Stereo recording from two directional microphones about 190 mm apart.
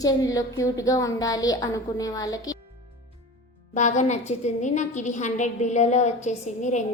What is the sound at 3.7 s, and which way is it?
A woman's voice, 40° left (ahead or behind).